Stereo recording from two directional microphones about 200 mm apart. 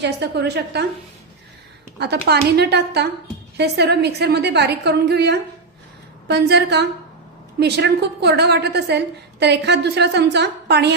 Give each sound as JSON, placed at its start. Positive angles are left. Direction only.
{"t": 0.0, "sound": "a woman's voice", "side_deg": -55}
{"t": 2.0, "sound": "a woman's voice", "side_deg": -55}